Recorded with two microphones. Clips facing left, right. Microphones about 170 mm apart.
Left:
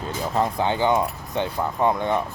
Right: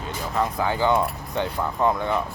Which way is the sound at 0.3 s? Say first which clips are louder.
Left 1 dB; 25° left (ahead or behind).